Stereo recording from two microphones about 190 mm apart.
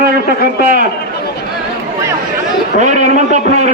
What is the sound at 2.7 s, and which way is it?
Speech, 40° right (ahead or behind).